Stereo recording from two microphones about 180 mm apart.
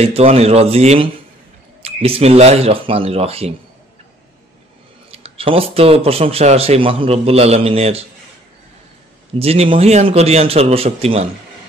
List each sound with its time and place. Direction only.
0.0 s speech: 35° right (ahead or behind)
5.1 s speech: 30° right (ahead or behind)
9.4 s speech: 35° right (ahead or behind)